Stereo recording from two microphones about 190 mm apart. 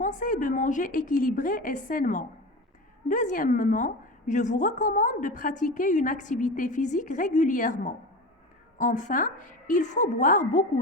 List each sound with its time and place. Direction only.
0.0 s a woman's voice: 40° left (ahead or behind)